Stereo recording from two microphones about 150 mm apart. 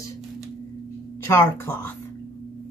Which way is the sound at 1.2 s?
15° left (ahead or behind).